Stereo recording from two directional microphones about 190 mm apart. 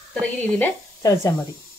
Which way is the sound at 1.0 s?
15° left (ahead or behind).